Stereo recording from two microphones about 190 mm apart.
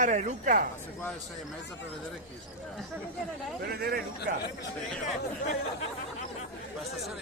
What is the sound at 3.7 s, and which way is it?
Speech, 55° right (ahead or behind).